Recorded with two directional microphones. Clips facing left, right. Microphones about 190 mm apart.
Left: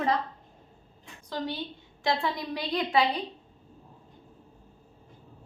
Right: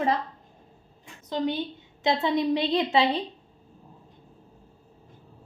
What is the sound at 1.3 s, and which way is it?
A woman's voice, 20° right (ahead or behind).